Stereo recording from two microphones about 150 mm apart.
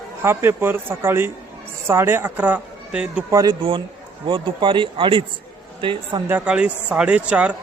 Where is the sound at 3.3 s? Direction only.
25° right (ahead or behind).